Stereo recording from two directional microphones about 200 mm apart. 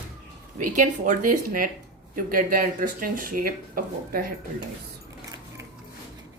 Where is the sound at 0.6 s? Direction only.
40° right (ahead or behind).